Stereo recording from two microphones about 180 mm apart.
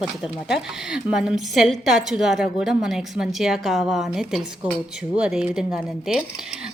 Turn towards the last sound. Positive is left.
turn(degrees=-5)  # may be behind; listen again after turning